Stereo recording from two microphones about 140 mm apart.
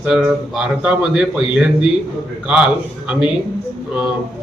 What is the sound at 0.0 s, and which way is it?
A man's voice, 5° right (ahead or behind).